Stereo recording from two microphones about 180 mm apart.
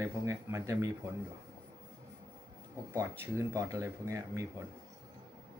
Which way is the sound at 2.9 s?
15° right (ahead or behind).